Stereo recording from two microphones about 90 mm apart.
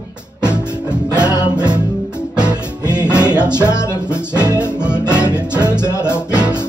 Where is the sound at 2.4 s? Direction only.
50° right (ahead or behind).